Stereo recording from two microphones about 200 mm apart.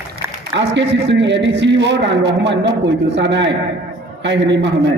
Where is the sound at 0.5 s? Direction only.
65° right (ahead or behind).